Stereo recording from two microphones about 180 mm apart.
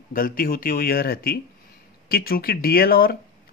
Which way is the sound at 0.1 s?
50° left (ahead or behind).